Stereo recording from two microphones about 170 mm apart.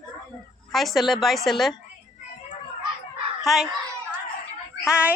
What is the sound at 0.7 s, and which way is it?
A woman's voice, centre (ahead or behind).